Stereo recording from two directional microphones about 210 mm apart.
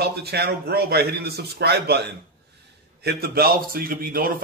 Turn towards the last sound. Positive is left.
turn(degrees=-45)  # may be behind; listen again after turning